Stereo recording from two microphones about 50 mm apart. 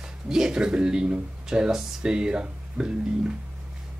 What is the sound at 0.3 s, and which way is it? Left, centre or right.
Speech, centre.